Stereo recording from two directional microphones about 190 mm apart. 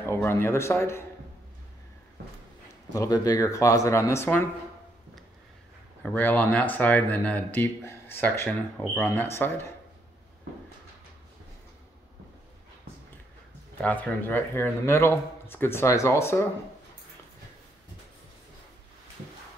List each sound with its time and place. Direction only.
0.0 s speech: 15° left (ahead or behind)
2.9 s speech: 20° left (ahead or behind)
6.0 s speech: 10° left (ahead or behind)
13.7 s speech: 10° left (ahead or behind)